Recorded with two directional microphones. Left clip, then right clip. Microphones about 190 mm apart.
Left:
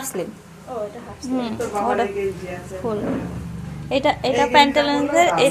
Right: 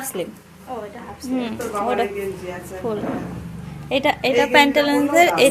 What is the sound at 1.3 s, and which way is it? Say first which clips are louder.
A woman's voice: left 1 dB; centre (ahead or behind).